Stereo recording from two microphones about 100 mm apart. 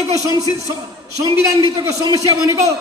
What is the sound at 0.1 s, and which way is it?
Speech, 35° right (ahead or behind).